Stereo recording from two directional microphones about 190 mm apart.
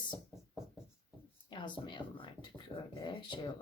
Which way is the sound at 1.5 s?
25° left (ahead or behind).